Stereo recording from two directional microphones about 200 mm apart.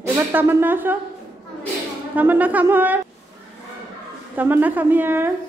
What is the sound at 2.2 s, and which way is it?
Speech, 10° right (ahead or behind).